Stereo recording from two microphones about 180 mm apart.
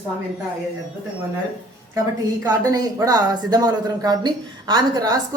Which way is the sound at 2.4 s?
20° right (ahead or behind).